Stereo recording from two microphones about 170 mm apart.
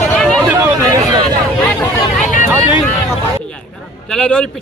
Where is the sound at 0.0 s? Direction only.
5° left (ahead or behind).